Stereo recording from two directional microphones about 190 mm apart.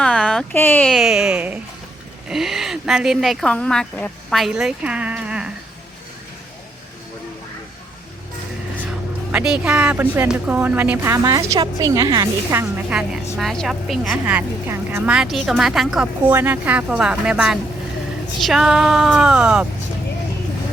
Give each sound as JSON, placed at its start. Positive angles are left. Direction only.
{"t": 0.0, "sound": "speech", "side_deg": 5}
{"t": 9.3, "sound": "a woman's voice", "side_deg": -5}